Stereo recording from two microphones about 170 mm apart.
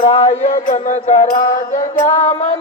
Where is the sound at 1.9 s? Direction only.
15° left (ahead or behind).